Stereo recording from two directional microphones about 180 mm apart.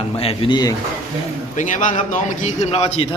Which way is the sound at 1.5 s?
45° left (ahead or behind).